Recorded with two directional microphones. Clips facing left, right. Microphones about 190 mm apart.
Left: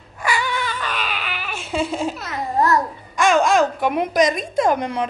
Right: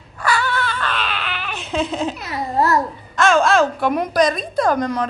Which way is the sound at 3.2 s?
15° left (ahead or behind).